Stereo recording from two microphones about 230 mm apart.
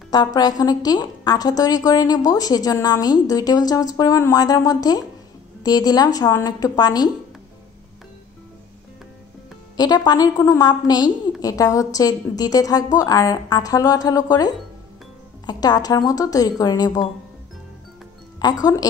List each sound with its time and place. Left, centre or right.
0.1 s a woman's voice: centre
9.8 s a woman's voice: centre
18.4 s a woman's voice: centre